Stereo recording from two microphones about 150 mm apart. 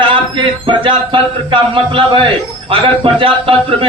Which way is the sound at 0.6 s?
35° right (ahead or behind).